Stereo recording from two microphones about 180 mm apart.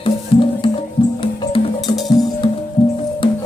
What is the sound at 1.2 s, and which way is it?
Music, 30° left (ahead or behind).